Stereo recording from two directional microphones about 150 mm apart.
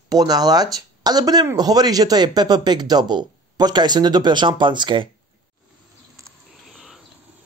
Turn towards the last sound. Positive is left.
turn(degrees=0)  # may be behind; listen again after turning